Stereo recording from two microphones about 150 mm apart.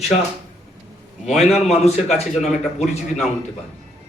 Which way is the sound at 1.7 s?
45° left (ahead or behind).